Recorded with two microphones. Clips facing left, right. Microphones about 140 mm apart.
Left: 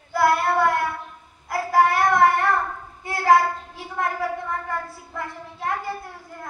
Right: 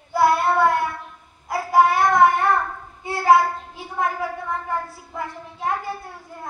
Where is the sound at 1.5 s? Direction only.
15° right (ahead or behind).